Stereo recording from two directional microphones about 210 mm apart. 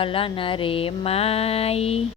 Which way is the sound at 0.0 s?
25° left (ahead or behind).